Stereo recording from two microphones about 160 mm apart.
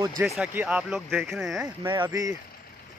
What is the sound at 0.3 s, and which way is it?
Speech, 10° right (ahead or behind).